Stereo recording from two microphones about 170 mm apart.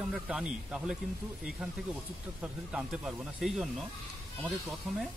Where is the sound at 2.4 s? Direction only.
5° right (ahead or behind).